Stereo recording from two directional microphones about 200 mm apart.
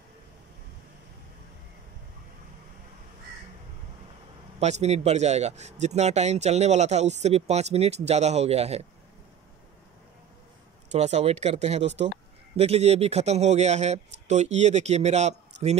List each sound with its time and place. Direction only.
4.6 s speech: 35° right (ahead or behind)
10.9 s speech: 35° right (ahead or behind)